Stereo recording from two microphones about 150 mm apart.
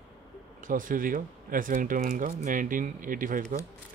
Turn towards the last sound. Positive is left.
turn(degrees=-60)  # may be behind; listen again after turning